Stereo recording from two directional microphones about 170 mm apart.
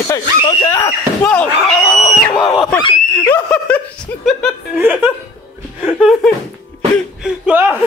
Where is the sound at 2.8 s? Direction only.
30° left (ahead or behind).